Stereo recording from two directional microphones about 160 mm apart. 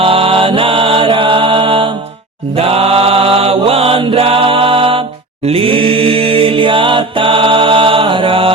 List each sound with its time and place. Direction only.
0.0 s mantra: 35° right (ahead or behind)
2.6 s chant: 40° right (ahead or behind)